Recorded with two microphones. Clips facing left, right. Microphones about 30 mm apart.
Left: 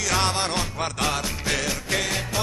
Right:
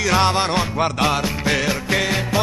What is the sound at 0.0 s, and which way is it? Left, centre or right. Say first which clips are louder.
Music: right 6 dB; centre.